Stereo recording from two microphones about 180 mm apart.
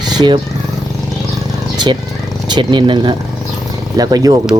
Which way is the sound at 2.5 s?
25° right (ahead or behind).